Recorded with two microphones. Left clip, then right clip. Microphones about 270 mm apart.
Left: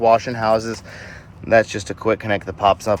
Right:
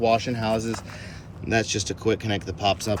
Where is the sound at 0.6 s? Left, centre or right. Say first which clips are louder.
Left 3 dB; centre.